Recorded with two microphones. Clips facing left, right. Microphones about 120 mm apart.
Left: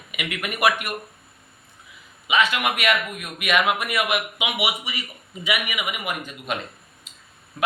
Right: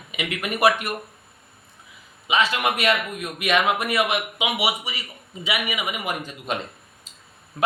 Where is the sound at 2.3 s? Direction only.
35° right (ahead or behind).